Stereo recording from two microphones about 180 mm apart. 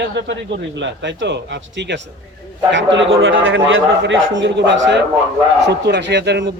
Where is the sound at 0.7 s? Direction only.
90° right.